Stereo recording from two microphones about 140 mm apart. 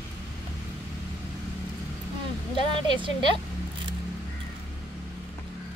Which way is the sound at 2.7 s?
35° right (ahead or behind).